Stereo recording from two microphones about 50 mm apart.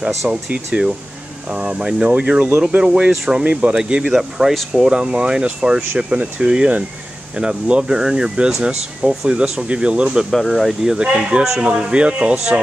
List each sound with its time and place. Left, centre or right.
0.2 s speech: centre
0.7 s speech: right
4.0 s speech: centre
10.3 s speech: centre
10.8 s speech: centre